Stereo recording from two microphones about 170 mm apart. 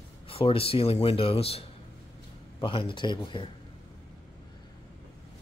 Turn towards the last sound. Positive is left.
turn(degrees=25)  # may be behind; listen again after turning